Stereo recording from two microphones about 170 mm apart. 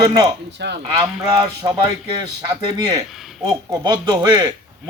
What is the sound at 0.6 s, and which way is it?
Speech, 85° right.